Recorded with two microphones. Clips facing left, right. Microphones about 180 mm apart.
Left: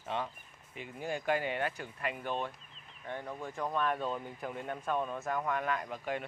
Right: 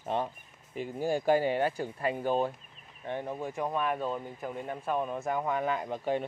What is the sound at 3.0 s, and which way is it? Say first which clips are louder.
Speech: right 5 dB; 25° right (ahead or behind).